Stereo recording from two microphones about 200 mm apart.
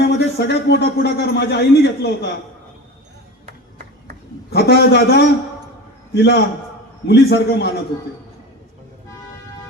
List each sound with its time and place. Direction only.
0.1 s speech: 55° left (ahead or behind)
4.5 s speech: 55° left (ahead or behind)